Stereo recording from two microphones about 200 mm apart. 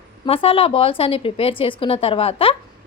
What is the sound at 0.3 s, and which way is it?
A woman's voice, 30° left (ahead or behind).